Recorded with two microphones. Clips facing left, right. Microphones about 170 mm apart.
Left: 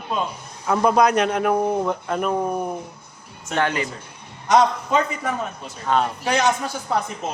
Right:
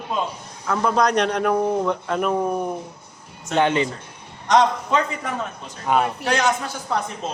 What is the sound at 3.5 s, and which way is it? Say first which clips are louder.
Speech: right 3 dB; 20° right (ahead or behind).